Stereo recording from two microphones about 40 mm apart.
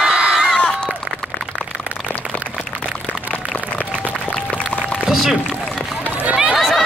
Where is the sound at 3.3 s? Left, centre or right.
Left.